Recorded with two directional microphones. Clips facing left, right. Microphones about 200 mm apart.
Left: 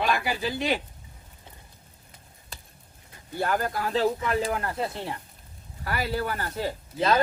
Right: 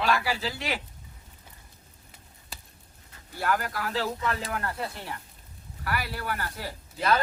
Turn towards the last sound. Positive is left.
turn(degrees=20)  # may be behind; listen again after turning